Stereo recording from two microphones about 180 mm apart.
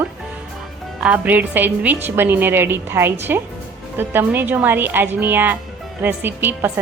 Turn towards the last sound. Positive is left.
turn(degrees=-10)  # may be behind; listen again after turning